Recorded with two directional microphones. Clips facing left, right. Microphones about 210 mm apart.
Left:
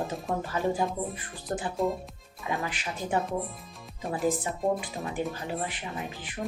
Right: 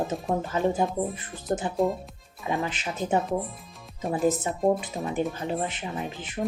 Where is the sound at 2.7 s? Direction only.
20° right (ahead or behind).